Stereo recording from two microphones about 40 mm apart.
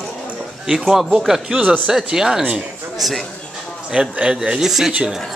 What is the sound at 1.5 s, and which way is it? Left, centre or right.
Speech, right.